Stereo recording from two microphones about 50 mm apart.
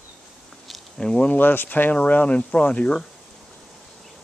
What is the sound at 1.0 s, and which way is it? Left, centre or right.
Speech, centre.